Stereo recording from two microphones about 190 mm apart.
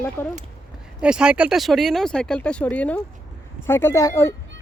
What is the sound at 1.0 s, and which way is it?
Speech, 5° right (ahead or behind).